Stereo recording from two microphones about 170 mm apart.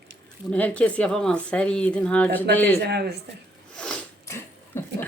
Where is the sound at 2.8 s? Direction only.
75° right (ahead or behind).